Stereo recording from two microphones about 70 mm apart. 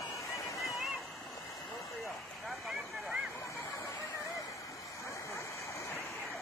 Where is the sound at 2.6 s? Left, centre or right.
Centre.